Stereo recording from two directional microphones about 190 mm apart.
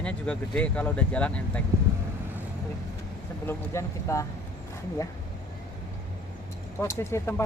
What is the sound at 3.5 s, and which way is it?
Speech, 15° left (ahead or behind).